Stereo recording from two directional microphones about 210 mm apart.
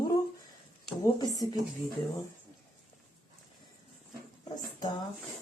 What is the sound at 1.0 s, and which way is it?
Speech, 15° left (ahead or behind).